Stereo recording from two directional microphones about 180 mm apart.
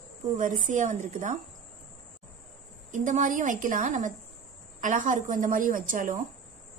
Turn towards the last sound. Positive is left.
turn(degrees=-45)  # may be behind; listen again after turning